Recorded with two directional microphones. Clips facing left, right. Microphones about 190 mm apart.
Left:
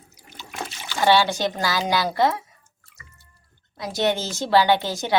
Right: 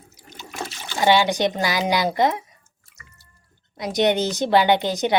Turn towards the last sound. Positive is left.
turn(degrees=-20)  # may be behind; listen again after turning